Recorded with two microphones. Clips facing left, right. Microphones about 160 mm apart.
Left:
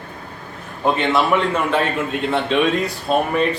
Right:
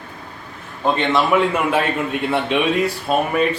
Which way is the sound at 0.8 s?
Centre (ahead or behind).